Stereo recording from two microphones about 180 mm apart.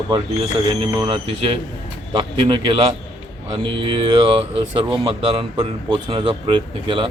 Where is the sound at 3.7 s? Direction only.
30° right (ahead or behind).